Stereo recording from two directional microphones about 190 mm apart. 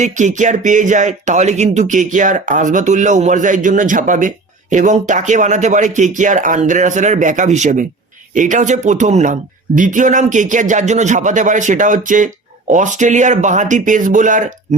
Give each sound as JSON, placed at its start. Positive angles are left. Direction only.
{"t": 0.0, "sound": "speech", "side_deg": -40}